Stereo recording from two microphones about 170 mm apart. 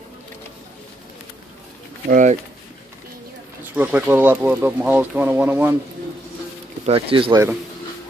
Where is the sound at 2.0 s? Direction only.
50° right (ahead or behind).